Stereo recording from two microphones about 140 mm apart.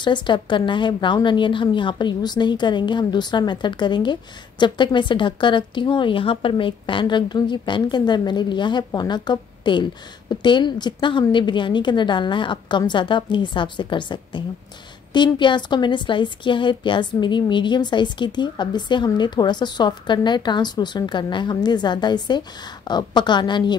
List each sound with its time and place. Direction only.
0.0 s a woman's voice: 35° left (ahead or behind)